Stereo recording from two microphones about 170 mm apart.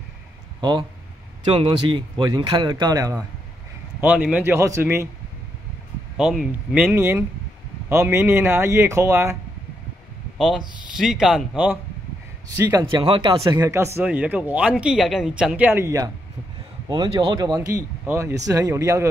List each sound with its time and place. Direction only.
0.6 s speech: 25° right (ahead or behind)
4.0 s speech: 10° right (ahead or behind)
6.4 s speech: 10° right (ahead or behind)
10.3 s speech: 5° right (ahead or behind)
12.8 s speech: 30° right (ahead or behind)
17.6 s speech: 15° right (ahead or behind)